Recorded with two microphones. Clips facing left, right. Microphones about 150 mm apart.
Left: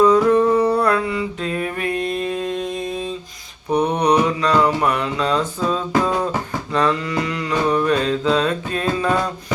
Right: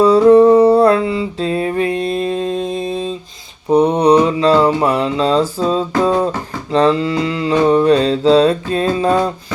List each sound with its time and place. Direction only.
0.0 s mantra: 30° right (ahead or behind)